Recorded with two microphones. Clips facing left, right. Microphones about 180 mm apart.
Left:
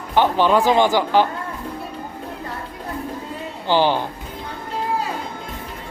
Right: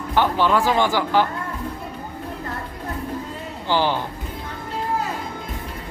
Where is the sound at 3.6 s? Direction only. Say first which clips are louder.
Left 3 dB; 15° left (ahead or behind).